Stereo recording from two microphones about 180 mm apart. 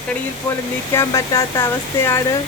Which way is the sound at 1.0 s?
15° left (ahead or behind).